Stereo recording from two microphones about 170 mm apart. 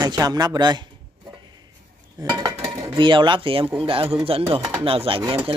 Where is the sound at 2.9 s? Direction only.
30° right (ahead or behind).